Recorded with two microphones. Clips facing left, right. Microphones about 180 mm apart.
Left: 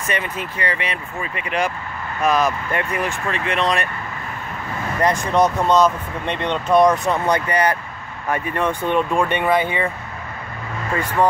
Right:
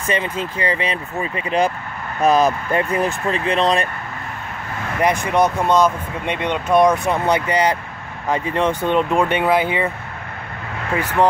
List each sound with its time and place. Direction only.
0.1 s speech: 30° right (ahead or behind)
5.0 s speech: 15° right (ahead or behind)
9.2 s speech: 10° right (ahead or behind)